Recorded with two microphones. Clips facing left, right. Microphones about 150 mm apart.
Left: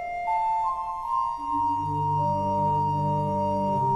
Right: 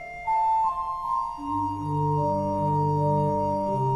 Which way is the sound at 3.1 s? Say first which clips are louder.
Right 3 dB; 35° right (ahead or behind).